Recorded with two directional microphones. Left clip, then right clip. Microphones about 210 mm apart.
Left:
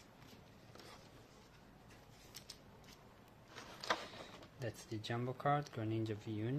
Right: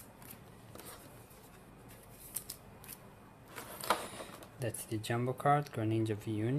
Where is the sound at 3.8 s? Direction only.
Centre (ahead or behind).